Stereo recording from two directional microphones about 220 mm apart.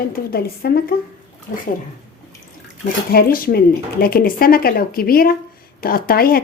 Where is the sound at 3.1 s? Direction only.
40° left (ahead or behind).